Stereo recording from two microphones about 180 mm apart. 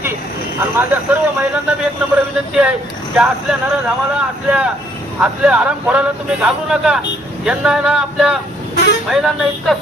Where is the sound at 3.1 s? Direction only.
5° right (ahead or behind).